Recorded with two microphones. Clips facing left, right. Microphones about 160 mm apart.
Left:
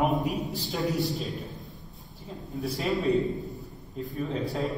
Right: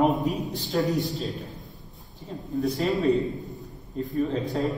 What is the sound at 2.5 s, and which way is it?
A man's voice, centre (ahead or behind).